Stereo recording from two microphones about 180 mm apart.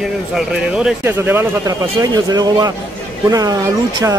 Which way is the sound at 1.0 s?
15° right (ahead or behind).